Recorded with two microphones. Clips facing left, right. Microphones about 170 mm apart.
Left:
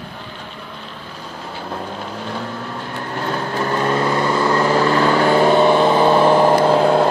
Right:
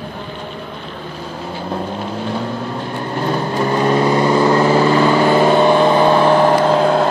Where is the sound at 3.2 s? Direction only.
10° right (ahead or behind); by 7.1 s 5° left (ahead or behind).